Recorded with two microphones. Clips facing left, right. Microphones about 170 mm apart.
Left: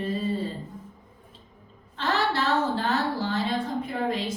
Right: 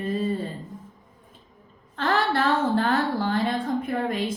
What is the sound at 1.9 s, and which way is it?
Speech, 55° right (ahead or behind).